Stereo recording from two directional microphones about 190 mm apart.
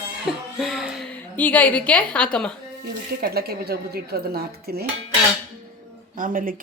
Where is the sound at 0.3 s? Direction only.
Centre (ahead or behind).